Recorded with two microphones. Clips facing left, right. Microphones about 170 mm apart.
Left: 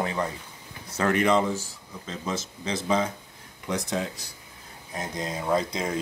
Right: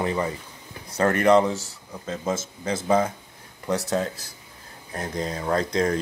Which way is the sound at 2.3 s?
50° right (ahead or behind).